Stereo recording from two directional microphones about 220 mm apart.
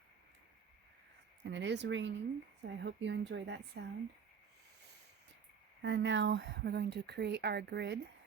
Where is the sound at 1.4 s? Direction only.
55° right (ahead or behind).